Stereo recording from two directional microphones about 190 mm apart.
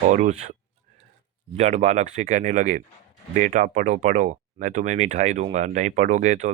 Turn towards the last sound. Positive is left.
turn(degrees=-40)  # may be behind; listen again after turning